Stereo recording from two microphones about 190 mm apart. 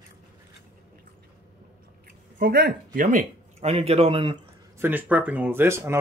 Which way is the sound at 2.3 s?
55° right (ahead or behind).